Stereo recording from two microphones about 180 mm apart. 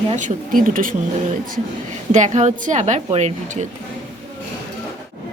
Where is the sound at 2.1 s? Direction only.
40° right (ahead or behind).